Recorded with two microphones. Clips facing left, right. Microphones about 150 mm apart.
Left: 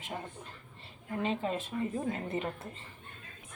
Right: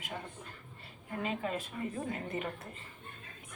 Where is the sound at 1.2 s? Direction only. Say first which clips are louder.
Left 3 dB; 25° left (ahead or behind).